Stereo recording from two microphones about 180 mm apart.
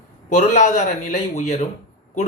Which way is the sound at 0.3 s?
45° left (ahead or behind).